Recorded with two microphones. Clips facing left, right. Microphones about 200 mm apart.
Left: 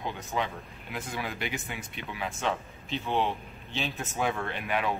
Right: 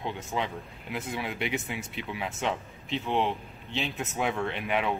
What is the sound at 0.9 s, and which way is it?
Speech, 25° right (ahead or behind).